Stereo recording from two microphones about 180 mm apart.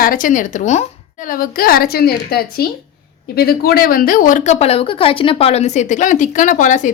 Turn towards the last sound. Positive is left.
turn(degrees=45)  # may be behind; listen again after turning